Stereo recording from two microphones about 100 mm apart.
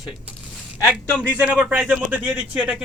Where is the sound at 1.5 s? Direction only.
10° right (ahead or behind).